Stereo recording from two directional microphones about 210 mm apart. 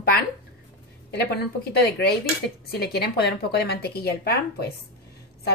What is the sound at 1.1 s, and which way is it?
Speech, 50° left (ahead or behind).